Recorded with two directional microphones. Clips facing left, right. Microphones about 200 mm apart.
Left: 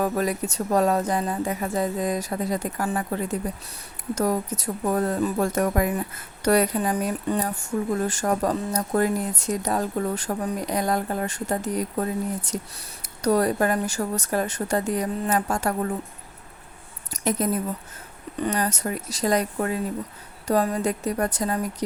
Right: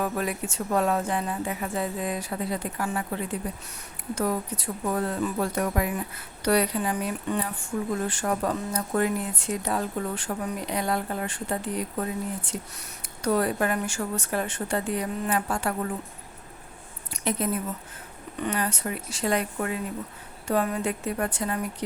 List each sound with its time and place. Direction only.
0.0 s speech: 40° left (ahead or behind)
17.1 s a woman's voice: 45° left (ahead or behind)